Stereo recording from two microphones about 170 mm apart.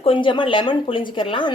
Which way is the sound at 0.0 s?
30° left (ahead or behind).